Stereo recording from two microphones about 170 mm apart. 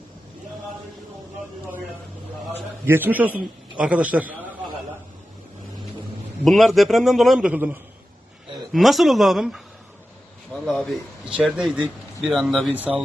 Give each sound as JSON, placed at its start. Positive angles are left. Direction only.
{"t": 2.5, "sound": "a man's voice", "side_deg": -10}
{"t": 6.4, "sound": "a man's voice", "side_deg": 0}
{"t": 10.7, "sound": "a man's voice", "side_deg": 5}